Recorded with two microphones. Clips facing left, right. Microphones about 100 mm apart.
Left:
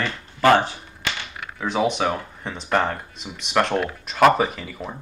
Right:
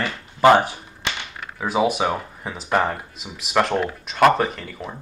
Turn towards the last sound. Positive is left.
turn(degrees=5)  # may be behind; listen again after turning